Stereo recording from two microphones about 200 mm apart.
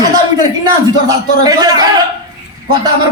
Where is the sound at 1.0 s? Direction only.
20° right (ahead or behind).